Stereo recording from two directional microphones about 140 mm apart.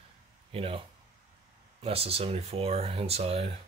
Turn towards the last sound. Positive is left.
turn(degrees=-45)  # may be behind; listen again after turning